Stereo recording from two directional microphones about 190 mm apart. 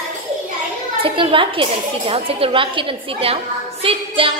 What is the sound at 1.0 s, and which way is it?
A woman's voice, 30° right (ahead or behind).